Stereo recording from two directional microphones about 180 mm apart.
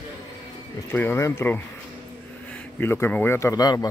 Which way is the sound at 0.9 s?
10° left (ahead or behind).